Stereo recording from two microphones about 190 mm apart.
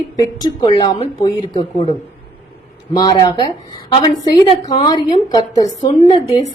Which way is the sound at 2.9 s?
20° left (ahead or behind).